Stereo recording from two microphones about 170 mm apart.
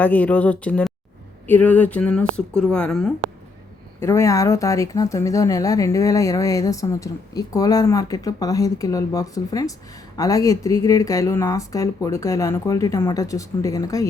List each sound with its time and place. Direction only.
0.0 s speech: 10° left (ahead or behind)
4.0 s speech: 15° left (ahead or behind)